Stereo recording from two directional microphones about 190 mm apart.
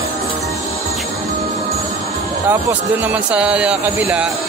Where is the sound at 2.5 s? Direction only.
10° right (ahead or behind).